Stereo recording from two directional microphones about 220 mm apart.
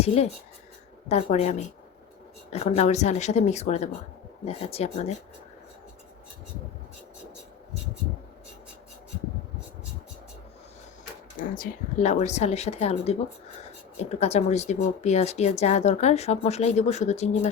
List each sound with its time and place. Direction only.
0.0 s speech: 30° left (ahead or behind)
11.3 s speech: 40° left (ahead or behind)